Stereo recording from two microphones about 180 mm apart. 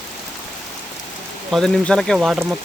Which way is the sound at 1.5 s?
5° left (ahead or behind).